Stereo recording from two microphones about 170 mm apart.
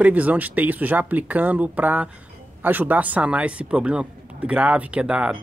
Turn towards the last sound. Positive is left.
turn(degrees=-5)  # may be behind; listen again after turning